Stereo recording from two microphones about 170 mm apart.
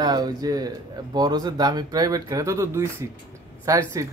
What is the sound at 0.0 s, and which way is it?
Speech, 25° right (ahead or behind).